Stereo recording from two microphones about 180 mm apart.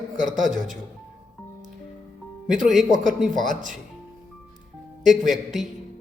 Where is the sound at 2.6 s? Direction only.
Centre (ahead or behind).